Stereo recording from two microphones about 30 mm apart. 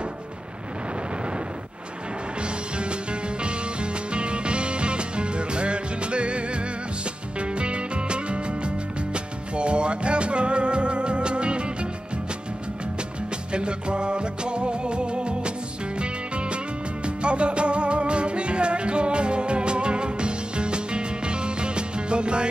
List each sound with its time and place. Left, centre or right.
2.4 s music: right
13.5 s music: right